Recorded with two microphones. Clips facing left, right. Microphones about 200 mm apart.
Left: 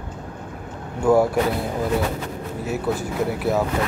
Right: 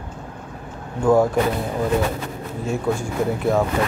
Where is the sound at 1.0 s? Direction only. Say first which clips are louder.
Right 1 dB; 10° left (ahead or behind).